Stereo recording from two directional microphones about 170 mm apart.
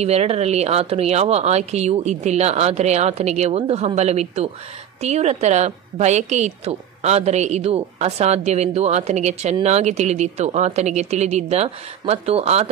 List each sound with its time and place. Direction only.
0.0 s a woman's voice: 40° right (ahead or behind)